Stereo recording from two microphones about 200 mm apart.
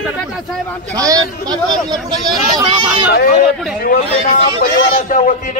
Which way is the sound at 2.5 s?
20° right (ahead or behind).